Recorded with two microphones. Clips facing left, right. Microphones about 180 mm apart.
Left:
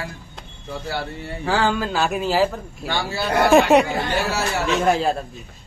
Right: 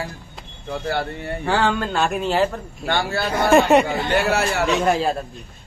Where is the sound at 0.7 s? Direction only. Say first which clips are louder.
Right 4 dB; 55° right (ahead or behind).